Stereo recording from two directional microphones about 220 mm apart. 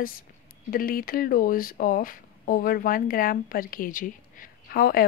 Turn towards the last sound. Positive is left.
turn(degrees=45)  # may be behind; listen again after turning